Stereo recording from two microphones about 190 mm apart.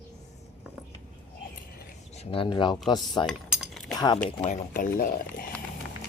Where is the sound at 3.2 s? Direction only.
Centre (ahead or behind).